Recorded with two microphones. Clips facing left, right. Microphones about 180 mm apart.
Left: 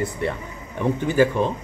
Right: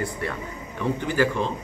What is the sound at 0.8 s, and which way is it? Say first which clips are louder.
Speech: left 4 dB; 20° left (ahead or behind).